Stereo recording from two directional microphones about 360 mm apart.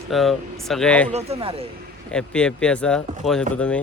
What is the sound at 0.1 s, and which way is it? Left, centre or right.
Speech, centre.